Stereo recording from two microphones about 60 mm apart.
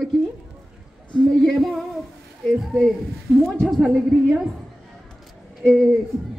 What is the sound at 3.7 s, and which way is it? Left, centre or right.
Speech, centre.